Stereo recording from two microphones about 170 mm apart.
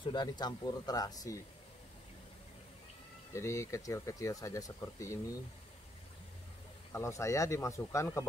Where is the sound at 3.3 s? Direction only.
15° left (ahead or behind).